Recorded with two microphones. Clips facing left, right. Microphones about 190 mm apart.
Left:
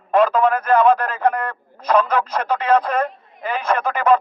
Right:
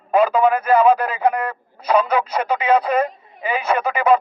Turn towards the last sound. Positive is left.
turn(degrees=-10)  # may be behind; listen again after turning